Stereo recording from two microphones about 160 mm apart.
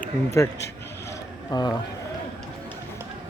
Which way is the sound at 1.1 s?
25° left (ahead or behind).